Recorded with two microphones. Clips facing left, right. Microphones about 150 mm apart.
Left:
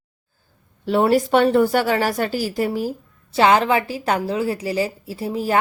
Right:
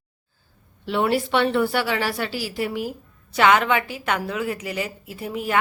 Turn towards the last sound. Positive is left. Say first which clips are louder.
# left 4 dB
turn(degrees=35)  # may be behind; listen again after turning